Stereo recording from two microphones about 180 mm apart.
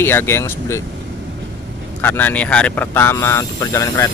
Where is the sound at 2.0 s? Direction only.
10° left (ahead or behind).